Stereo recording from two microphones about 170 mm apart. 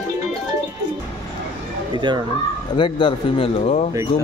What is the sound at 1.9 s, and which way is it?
Speech, 25° right (ahead or behind).